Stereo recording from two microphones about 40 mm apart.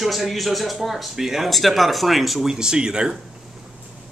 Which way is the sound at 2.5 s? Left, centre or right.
Centre.